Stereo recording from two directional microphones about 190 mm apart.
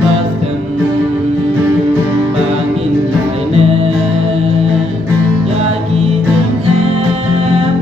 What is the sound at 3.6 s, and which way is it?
Music, 30° right (ahead or behind).